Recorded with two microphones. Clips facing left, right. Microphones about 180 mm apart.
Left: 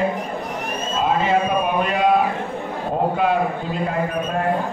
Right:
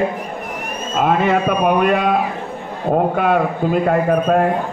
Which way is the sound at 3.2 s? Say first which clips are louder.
Right 3 dB; 55° right (ahead or behind).